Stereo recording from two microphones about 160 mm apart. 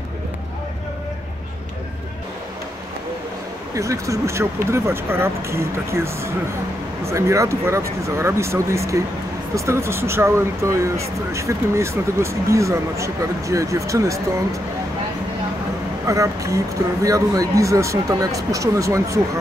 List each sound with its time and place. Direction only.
3.7 s speech: 20° right (ahead or behind)
16.1 s speech: 20° right (ahead or behind)